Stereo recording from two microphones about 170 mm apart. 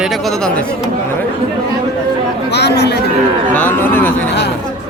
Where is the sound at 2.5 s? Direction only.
80° left.